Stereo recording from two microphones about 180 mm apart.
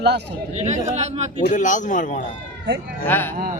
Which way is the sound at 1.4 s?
45° left (ahead or behind).